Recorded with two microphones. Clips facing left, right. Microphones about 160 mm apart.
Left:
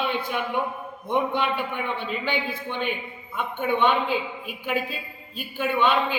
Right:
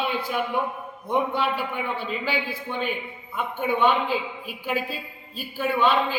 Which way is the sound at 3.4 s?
5° right (ahead or behind).